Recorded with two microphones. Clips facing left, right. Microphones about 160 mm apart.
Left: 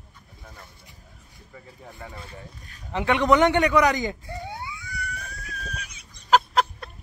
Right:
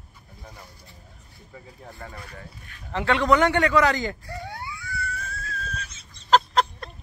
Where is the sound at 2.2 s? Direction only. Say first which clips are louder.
Even; 25° left (ahead or behind).